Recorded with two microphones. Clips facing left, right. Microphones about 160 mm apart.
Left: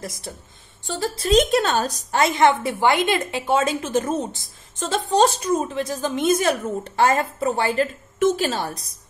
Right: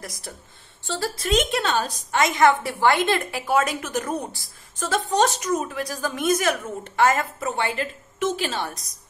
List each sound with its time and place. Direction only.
0.0 s a woman's voice: 25° left (ahead or behind)
1.1 s a woman's voice: 30° left (ahead or behind)